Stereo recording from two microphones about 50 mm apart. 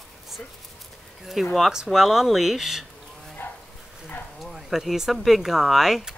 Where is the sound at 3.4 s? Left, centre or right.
Left.